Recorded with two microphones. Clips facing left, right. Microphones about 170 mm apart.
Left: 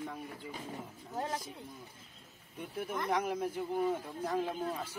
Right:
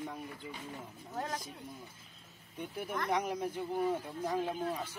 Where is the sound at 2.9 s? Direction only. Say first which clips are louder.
Even; 5° left (ahead or behind).